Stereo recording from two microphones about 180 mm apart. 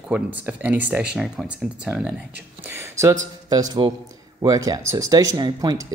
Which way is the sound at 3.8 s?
25° right (ahead or behind).